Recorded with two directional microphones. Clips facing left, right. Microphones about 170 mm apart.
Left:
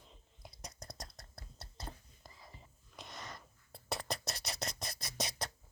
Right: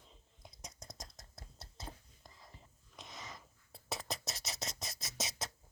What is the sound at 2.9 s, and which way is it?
Scratch, centre (ahead or behind).